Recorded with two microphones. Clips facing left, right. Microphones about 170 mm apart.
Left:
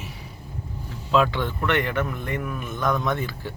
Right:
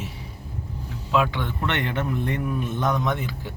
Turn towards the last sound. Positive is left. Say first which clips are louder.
# even
turn(degrees=-20)  # may be behind; listen again after turning